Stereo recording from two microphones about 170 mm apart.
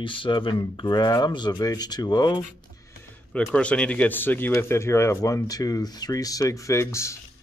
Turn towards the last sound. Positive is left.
turn(degrees=15)  # may be behind; listen again after turning